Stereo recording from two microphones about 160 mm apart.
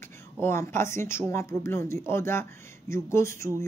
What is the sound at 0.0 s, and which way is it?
Speech, 15° left (ahead or behind).